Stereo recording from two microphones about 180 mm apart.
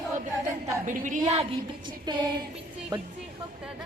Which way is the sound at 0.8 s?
45° right (ahead or behind).